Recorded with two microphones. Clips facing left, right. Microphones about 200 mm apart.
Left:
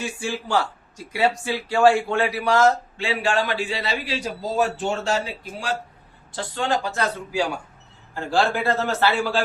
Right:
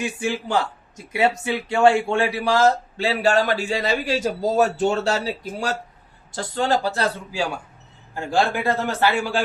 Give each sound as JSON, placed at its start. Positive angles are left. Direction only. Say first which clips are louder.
{"t": 0.2, "sound": "speech", "louder": "even", "side_deg": -20}
{"t": 8.1, "sound": "a man's voice", "louder": "even", "side_deg": -15}